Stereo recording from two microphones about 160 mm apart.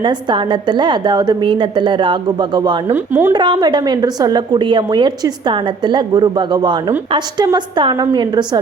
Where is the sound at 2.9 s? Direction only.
15° right (ahead or behind).